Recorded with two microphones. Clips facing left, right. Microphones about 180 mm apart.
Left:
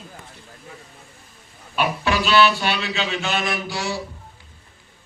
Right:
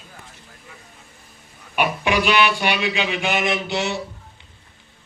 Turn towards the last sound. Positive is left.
turn(degrees=-20)  # may be behind; listen again after turning